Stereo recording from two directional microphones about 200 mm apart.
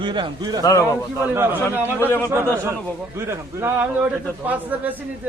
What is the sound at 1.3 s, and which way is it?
Speech, 10° right (ahead or behind).